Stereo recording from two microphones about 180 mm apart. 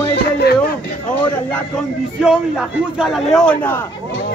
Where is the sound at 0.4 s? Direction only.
65° left (ahead or behind).